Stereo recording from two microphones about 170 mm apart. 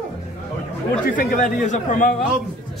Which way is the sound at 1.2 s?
50° left (ahead or behind).